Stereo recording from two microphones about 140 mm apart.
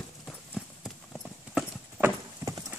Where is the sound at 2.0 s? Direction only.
15° right (ahead or behind).